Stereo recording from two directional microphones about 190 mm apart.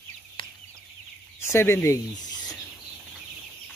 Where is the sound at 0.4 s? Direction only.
30° left (ahead or behind).